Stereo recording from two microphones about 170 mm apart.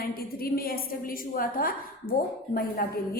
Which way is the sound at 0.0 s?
60° left (ahead or behind).